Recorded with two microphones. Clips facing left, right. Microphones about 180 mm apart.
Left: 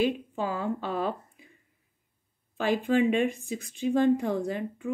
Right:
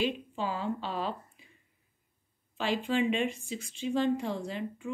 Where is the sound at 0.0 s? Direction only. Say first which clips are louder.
Left 4 dB; 50° left (ahead or behind).